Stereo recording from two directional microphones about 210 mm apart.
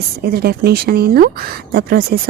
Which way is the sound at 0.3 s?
50° right (ahead or behind).